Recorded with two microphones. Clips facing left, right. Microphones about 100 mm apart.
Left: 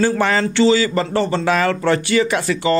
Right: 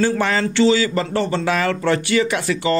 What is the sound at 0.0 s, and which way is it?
Speech, 45° left (ahead or behind).